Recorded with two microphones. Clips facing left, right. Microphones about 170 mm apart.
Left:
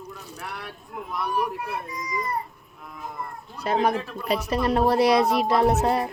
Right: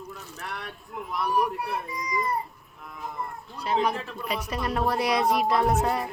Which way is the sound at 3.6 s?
45° left (ahead or behind).